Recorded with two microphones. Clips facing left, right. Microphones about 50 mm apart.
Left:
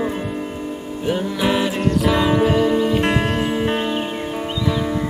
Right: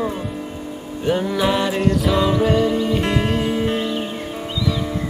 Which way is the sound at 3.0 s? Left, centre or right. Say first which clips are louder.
Left 2 dB; centre.